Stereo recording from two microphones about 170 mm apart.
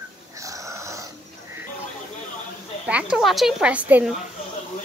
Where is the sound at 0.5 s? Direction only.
20° right (ahead or behind).